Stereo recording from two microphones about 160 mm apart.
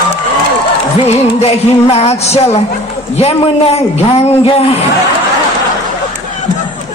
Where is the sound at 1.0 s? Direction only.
40° left (ahead or behind).